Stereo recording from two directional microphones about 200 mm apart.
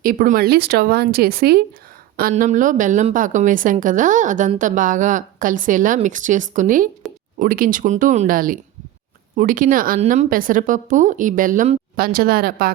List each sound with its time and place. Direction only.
0.0 s a woman's voice: 45° right (ahead or behind)